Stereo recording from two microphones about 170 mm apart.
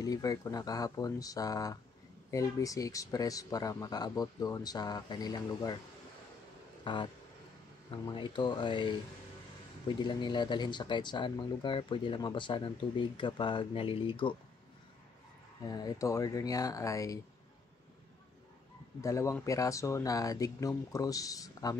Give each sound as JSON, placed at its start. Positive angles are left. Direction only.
{"t": 0.0, "sound": "speech", "side_deg": 20}
{"t": 6.8, "sound": "speech", "side_deg": 30}
{"t": 10.0, "sound": "speech", "side_deg": 25}
{"t": 15.6, "sound": "speech", "side_deg": 20}
{"t": 18.9, "sound": "speech", "side_deg": 20}